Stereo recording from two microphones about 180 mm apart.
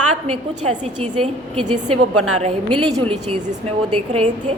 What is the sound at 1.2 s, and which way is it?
A woman's voice, 25° right (ahead or behind).